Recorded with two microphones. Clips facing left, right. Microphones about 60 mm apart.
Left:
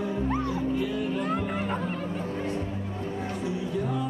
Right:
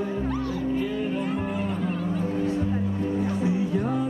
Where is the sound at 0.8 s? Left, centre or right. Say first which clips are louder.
Right 2 dB; right.